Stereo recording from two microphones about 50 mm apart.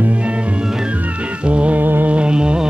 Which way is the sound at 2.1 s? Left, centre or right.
Right.